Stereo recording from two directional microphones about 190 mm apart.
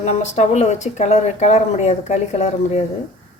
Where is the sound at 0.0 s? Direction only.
35° left (ahead or behind).